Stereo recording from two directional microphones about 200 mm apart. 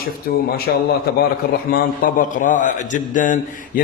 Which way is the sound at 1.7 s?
45° left (ahead or behind).